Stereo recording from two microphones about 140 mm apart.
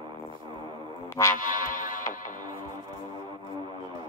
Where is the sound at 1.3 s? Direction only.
70° left (ahead or behind).